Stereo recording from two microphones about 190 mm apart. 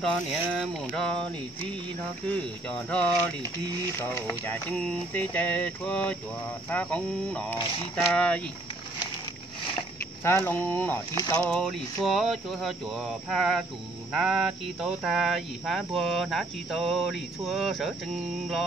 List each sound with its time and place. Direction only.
0.0 s speech: centre (ahead or behind)
10.2 s speech: 10° left (ahead or behind)
11.1 s speech: 20° left (ahead or behind)
11.5 s speech: centre (ahead or behind)